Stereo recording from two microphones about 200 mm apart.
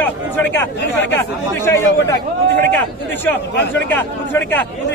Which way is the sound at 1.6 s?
15° left (ahead or behind).